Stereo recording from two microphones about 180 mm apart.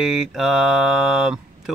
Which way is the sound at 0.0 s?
Centre (ahead or behind).